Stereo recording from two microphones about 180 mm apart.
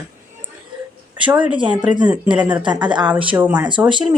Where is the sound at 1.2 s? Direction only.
5° right (ahead or behind).